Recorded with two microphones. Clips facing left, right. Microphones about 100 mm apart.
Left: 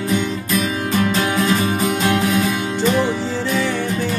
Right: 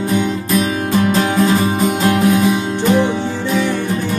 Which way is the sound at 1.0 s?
35° right (ahead or behind).